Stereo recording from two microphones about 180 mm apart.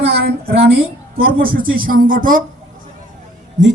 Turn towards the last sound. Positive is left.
turn(degrees=-45)  # may be behind; listen again after turning